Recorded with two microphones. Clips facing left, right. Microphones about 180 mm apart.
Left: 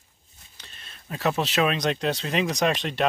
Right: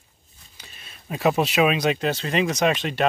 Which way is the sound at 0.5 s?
10° right (ahead or behind).